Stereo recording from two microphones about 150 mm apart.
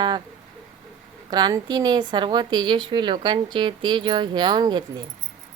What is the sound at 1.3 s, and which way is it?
A woman's voice, 30° right (ahead or behind).